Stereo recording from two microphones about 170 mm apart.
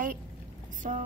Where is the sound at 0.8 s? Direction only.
45° right (ahead or behind).